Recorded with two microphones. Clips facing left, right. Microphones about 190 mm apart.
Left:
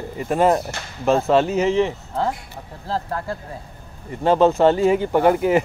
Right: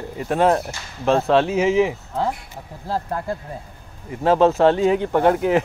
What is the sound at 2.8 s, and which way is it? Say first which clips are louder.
Speech: right 1 dB; 15° right (ahead or behind).